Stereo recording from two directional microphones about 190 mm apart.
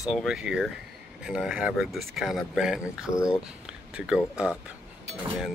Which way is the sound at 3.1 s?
15° left (ahead or behind).